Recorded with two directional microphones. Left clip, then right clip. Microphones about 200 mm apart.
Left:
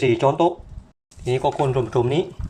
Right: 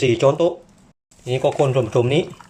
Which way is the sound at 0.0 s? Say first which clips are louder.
Right 2 dB; 15° right (ahead or behind).